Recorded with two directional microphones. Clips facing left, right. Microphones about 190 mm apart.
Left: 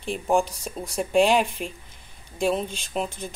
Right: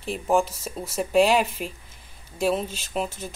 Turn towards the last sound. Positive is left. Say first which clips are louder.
# even
turn(degrees=-5)  # may be behind; listen again after turning